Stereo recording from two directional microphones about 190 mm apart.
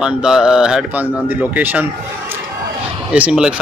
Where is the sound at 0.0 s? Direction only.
5° right (ahead or behind).